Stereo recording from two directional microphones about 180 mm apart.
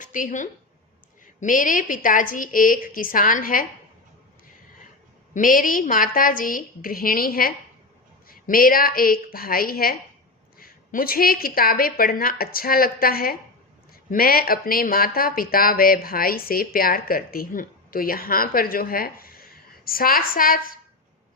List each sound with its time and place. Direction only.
0.0 s a woman's voice: 45° left (ahead or behind)
5.3 s a woman's voice: 50° left (ahead or behind)